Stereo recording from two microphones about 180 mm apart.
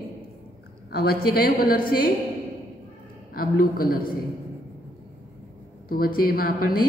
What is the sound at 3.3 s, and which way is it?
Speech, 55° left (ahead or behind).